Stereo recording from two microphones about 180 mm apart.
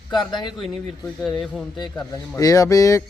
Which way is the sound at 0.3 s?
25° left (ahead or behind).